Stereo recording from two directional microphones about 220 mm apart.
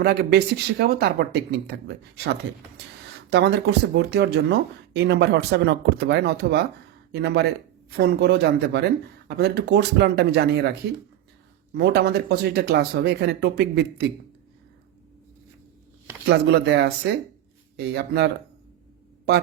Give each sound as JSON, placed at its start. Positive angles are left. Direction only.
{"t": 0.0, "sound": "speech", "side_deg": -50}
{"t": 3.2, "sound": "speech", "side_deg": -50}
{"t": 11.8, "sound": "speech", "side_deg": -50}
{"t": 16.2, "sound": "speech", "side_deg": -50}